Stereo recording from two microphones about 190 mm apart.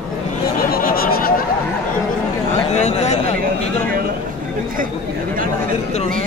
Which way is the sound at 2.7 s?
35° left (ahead or behind).